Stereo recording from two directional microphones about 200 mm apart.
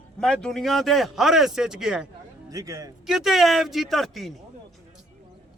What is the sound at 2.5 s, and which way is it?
Speech, 15° right (ahead or behind).